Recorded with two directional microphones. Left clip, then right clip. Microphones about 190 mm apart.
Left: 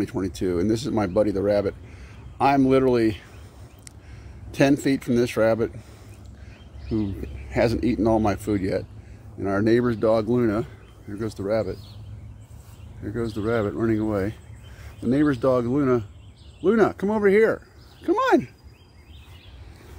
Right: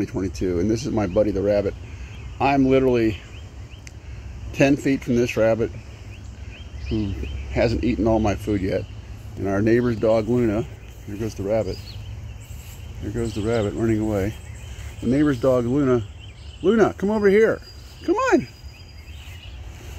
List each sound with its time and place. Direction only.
0.0 s speech: 10° left (ahead or behind)
0.7 s speech: 25° left (ahead or behind)
4.6 s speech: 25° left (ahead or behind)
7.5 s speech: 30° left (ahead or behind)
9.4 s speech: 5° left (ahead or behind)
10.0 s speech: 25° left (ahead or behind)
10.3 s speech: 10° left (ahead or behind)
13.0 s speech: 5° left (ahead or behind)
18.1 s speech: 25° left (ahead or behind)